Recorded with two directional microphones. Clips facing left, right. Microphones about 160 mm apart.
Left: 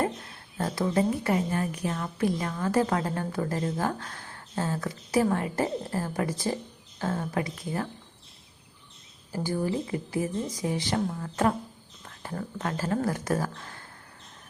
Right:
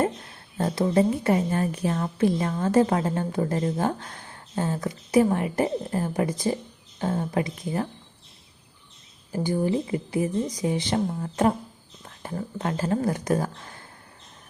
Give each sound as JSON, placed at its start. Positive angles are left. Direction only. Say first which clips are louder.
{"t": 0.5, "sound": "a woman's voice", "louder": "right 4 dB", "side_deg": -25}
{"t": 9.3, "sound": "a woman's voice", "louder": "right 4 dB", "side_deg": -20}